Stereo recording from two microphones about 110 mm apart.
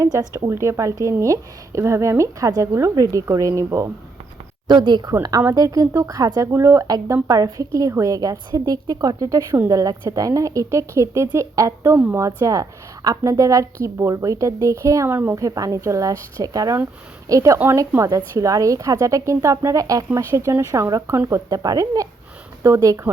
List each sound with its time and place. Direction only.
0.0 s a woman's voice: 30° right (ahead or behind)
4.7 s speech: 45° right (ahead or behind)
5.4 s a woman's voice: 30° right (ahead or behind)
15.4 s a woman's voice: 30° right (ahead or behind)